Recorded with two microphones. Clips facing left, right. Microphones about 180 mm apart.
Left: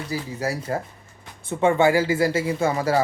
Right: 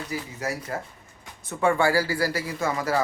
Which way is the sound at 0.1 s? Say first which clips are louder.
Left 5 dB; 30° left (ahead or behind).